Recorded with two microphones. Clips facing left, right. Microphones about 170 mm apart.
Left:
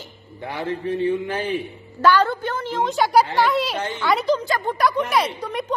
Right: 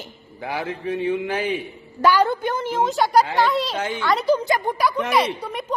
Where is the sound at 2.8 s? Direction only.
Centre (ahead or behind).